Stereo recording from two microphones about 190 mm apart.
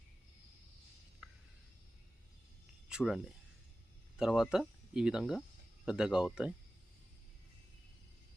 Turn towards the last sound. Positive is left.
turn(degrees=-5)  # may be behind; listen again after turning